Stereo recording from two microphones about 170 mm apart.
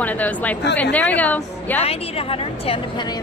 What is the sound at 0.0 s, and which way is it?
Speech, 10° left (ahead or behind).